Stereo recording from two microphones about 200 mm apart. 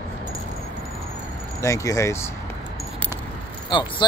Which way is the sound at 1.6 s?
15° left (ahead or behind).